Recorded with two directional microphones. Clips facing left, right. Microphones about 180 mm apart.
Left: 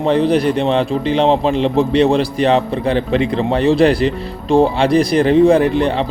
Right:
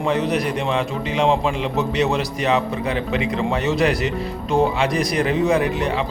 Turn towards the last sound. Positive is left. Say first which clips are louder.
# left 6 dB
turn(degrees=30)  # may be behind; listen again after turning